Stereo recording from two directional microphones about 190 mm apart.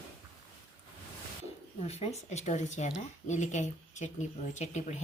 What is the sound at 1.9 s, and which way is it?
A woman's voice, 35° left (ahead or behind).